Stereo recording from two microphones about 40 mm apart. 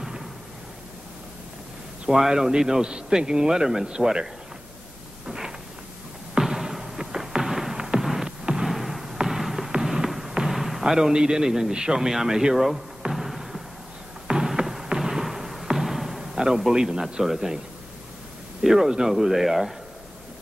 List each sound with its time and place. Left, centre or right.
0.0 s a sound: centre
2.1 s a man's voice: centre
5.2 s a sound: centre
7.4 s music: centre
8.6 s basketball bounce: centre
9.3 s a sound: centre
10.4 s basketball bounce: centre
10.8 s a man's voice: centre
13.1 s a sound: centre
14.9 s basketball bounce: centre
17.0 s a man's voice: centre
18.6 s a man's voice: centre